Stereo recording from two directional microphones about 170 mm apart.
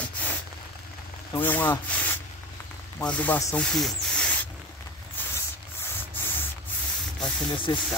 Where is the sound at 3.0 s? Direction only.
10° left (ahead or behind).